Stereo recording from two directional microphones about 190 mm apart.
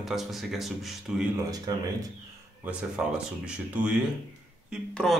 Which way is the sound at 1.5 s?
20° right (ahead or behind).